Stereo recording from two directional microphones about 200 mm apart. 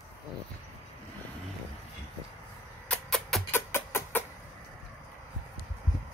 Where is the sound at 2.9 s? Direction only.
5° left (ahead or behind).